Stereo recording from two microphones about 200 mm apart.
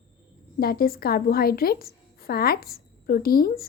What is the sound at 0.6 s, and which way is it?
Speech, 50° left (ahead or behind).